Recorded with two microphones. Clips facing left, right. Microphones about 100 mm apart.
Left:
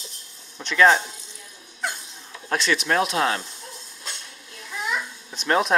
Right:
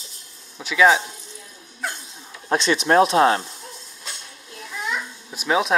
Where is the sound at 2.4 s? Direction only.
20° right (ahead or behind).